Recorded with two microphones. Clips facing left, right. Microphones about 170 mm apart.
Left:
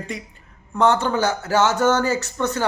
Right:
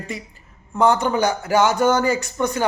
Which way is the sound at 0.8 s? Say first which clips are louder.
Right 1 dB; 10° right (ahead or behind).